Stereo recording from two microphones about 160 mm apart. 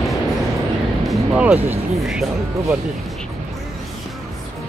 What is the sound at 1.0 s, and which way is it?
Speech, 5° right (ahead or behind).